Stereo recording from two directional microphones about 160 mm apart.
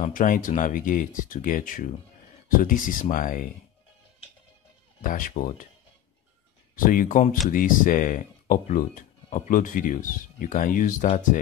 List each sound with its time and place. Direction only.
0.0 s speech: 55° left (ahead or behind)
5.0 s speech: 60° left (ahead or behind)
6.8 s speech: 60° left (ahead or behind)